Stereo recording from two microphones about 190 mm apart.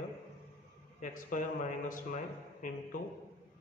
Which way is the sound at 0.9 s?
45° left (ahead or behind).